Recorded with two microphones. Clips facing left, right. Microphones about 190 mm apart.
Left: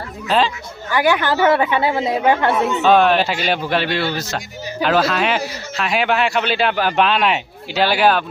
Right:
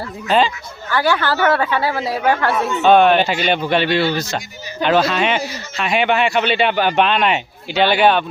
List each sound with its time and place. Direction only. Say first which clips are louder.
0.3 s a man's voice: right 2 dB; centre (ahead or behind)
0.9 s speech: left 1 dB; 15° left (ahead or behind)
2.8 s a man's voice: right 3 dB; centre (ahead or behind)